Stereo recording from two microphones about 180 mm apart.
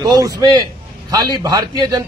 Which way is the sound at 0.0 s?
20° right (ahead or behind).